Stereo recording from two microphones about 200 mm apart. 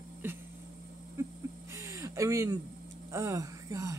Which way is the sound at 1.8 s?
15° right (ahead or behind).